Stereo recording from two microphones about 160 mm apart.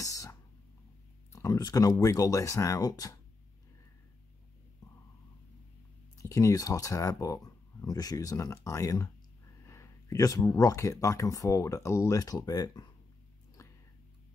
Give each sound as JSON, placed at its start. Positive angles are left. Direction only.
{"t": 0.0, "sound": "throat clearing", "side_deg": 20}
{"t": 1.3, "sound": "speech", "side_deg": 20}
{"t": 6.1, "sound": "speech", "side_deg": 20}